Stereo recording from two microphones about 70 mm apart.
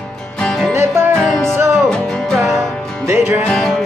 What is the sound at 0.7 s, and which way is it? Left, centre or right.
Music, right.